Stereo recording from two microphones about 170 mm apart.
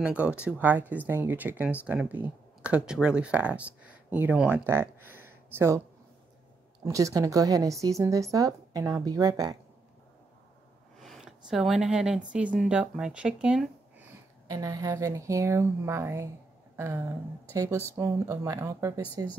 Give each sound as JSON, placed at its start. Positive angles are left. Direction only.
{"t": 0.0, "sound": "speech", "side_deg": -5}
{"t": 6.8, "sound": "a woman's voice", "side_deg": -20}
{"t": 11.0, "sound": "a sound", "side_deg": 0}
{"t": 12.3, "sound": "speech", "side_deg": -5}
{"t": 14.5, "sound": "speech", "side_deg": -20}
{"t": 16.7, "sound": "a sound", "side_deg": -15}
{"t": 17.9, "sound": "speech", "side_deg": -10}